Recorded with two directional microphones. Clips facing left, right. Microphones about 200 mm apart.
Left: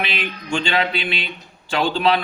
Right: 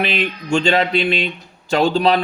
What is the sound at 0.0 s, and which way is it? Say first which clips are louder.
Speech: right 6 dB; 45° right (ahead or behind).